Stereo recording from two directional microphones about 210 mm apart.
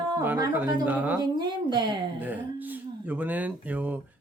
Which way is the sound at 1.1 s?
20° right (ahead or behind).